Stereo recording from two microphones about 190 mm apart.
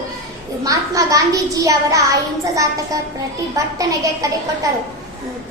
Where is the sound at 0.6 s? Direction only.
20° right (ahead or behind).